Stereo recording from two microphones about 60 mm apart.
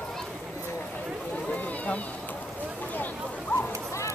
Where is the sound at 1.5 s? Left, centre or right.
Left.